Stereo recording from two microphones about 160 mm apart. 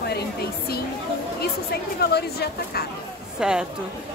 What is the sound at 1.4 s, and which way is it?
A woman's voice, 80° left.